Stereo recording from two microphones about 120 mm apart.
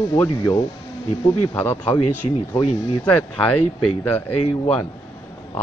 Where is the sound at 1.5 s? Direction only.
20° left (ahead or behind).